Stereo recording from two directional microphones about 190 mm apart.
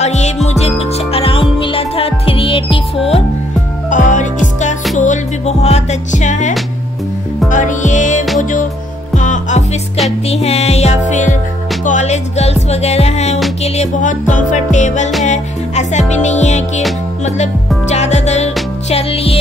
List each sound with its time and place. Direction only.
0.0 s music: 35° left (ahead or behind)
3.9 s music: 40° left (ahead or behind)